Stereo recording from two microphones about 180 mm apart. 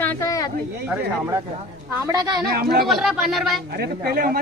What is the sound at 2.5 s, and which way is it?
Speech, 60° right (ahead or behind).